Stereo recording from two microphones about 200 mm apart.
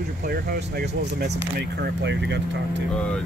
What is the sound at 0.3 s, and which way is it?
Speech, 50° right (ahead or behind).